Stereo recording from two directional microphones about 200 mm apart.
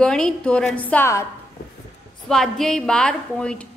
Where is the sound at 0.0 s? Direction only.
5° left (ahead or behind).